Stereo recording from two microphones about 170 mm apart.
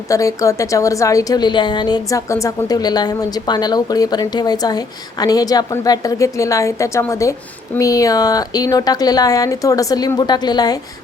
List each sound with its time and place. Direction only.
0.1 s a woman's voice: 20° left (ahead or behind)